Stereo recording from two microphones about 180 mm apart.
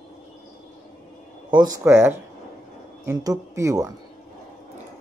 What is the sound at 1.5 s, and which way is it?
Speech, 20° right (ahead or behind).